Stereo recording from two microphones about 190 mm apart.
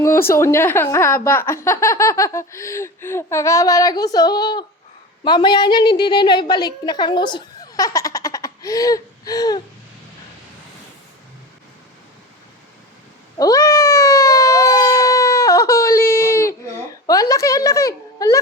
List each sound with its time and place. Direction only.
0.0 s a woman's voice: 15° left (ahead or behind)
13.3 s a sound: 20° left (ahead or behind)
17.1 s a woman's voice: 15° left (ahead or behind)